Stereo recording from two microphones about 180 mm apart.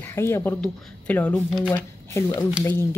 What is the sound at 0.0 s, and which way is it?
Speech, 15° left (ahead or behind).